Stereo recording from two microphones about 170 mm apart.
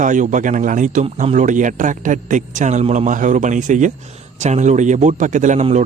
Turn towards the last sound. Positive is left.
turn(degrees=-45)  # may be behind; listen again after turning